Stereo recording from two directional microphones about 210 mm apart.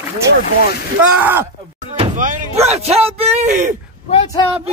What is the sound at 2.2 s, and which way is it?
Speech, 40° right (ahead or behind).